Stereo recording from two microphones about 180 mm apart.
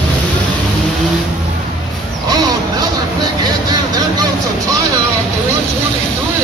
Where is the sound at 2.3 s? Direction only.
20° right (ahead or behind).